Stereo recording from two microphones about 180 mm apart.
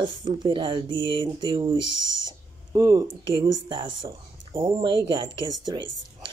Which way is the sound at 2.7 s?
20° right (ahead or behind).